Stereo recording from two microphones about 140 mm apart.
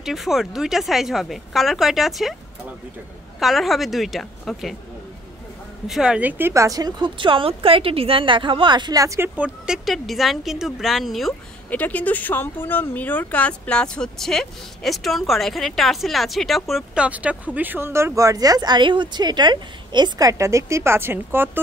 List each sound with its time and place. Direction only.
0.0 s speech: centre (ahead or behind)
3.3 s speech: centre (ahead or behind)
5.9 s speech: 5° right (ahead or behind); by 9.3 s 20° right (ahead or behind)
9.4 s speech: 5° right (ahead or behind)
11.8 s speech: 10° left (ahead or behind); by 21.5 s 15° right (ahead or behind)